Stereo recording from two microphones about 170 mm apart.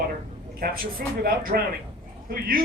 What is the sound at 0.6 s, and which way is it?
Speech, 60° right (ahead or behind).